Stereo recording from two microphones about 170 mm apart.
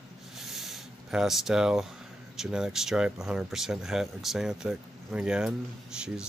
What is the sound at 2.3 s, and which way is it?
Speech, 5° right (ahead or behind).